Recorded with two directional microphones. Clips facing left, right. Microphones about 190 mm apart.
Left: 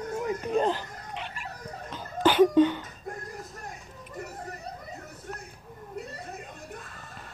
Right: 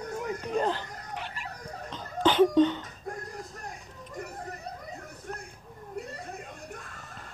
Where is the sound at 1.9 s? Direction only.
10° left (ahead or behind).